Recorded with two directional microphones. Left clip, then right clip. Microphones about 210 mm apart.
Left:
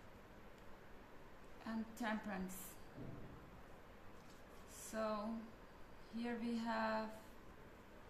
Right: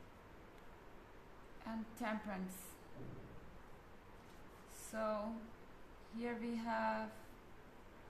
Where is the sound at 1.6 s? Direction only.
15° right (ahead or behind).